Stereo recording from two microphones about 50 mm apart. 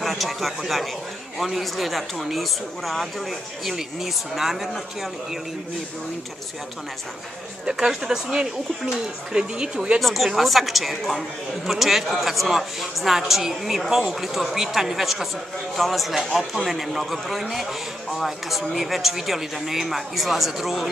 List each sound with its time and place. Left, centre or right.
0.0 s a woman's voice: centre
7.6 s speech: centre
9.9 s a woman's voice: centre